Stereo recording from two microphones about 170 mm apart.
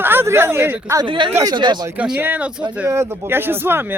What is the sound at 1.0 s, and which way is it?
Speech, 30° right (ahead or behind).